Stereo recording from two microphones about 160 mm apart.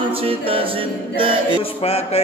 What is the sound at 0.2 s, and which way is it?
Music, 35° right (ahead or behind).